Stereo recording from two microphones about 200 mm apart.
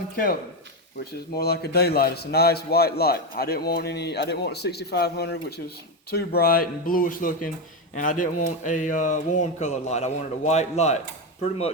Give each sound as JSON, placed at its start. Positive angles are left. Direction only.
{"t": 1.4, "sound": "a man's voice", "side_deg": 50}